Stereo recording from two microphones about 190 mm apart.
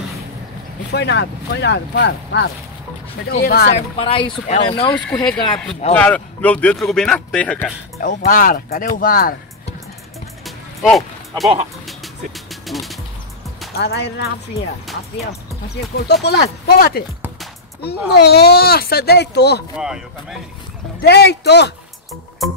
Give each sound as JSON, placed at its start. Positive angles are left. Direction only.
{"t": 0.9, "sound": "speech", "side_deg": 65}
{"t": 3.3, "sound": "speech", "side_deg": 55}
{"t": 3.7, "sound": "speech", "side_deg": 30}
{"t": 5.9, "sound": "speech", "side_deg": 5}
{"t": 8.0, "sound": "speech", "side_deg": 45}
{"t": 10.4, "sound": "music", "side_deg": 0}
{"t": 12.6, "sound": "music", "side_deg": 0}
{"t": 13.7, "sound": "speech", "side_deg": 60}
{"t": 15.7, "sound": "speech", "side_deg": 60}
{"t": 18.1, "sound": "speech", "side_deg": 60}
{"t": 19.8, "sound": "speech", "side_deg": -5}
{"t": 21.0, "sound": "speech", "side_deg": 60}